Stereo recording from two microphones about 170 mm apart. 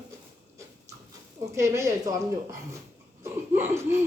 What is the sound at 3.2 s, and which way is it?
Whimper, 15° right (ahead or behind).